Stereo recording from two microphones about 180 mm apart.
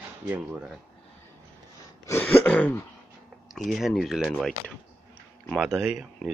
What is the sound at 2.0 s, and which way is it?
A man's voice, 10° left (ahead or behind).